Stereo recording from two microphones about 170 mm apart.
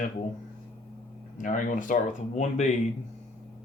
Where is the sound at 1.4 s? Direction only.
50° left (ahead or behind).